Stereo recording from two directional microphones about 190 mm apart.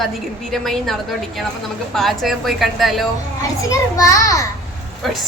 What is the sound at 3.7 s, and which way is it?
Speech, 15° left (ahead or behind).